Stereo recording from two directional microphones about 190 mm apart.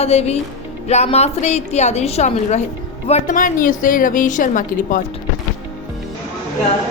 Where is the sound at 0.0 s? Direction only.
35° left (ahead or behind).